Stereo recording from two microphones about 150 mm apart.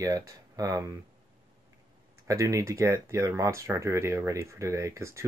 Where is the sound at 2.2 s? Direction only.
20° right (ahead or behind).